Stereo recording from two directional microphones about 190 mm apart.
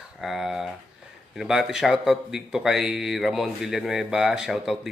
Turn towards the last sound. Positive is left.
turn(degrees=-5)  # may be behind; listen again after turning